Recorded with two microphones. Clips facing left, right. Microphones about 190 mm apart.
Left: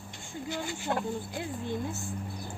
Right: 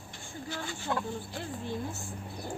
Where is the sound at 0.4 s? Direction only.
15° left (ahead or behind).